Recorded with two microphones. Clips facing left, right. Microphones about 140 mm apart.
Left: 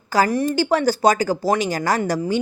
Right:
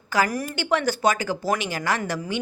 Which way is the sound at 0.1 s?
30° left (ahead or behind).